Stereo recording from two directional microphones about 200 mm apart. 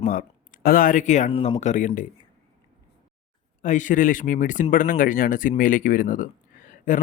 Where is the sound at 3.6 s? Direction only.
40° left (ahead or behind).